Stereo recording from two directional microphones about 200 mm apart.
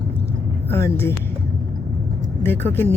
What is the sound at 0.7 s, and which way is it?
Speech, 10° left (ahead or behind).